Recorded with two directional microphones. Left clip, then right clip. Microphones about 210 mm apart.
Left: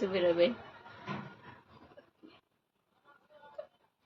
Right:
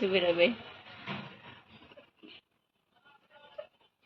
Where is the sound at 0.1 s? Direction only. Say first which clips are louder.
Right 1 dB; 15° right (ahead or behind).